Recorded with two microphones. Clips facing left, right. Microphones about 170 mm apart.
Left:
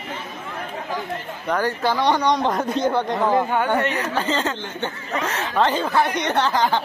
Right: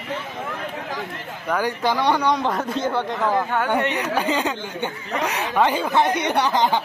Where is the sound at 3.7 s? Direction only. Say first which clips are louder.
Even; 15° right (ahead or behind).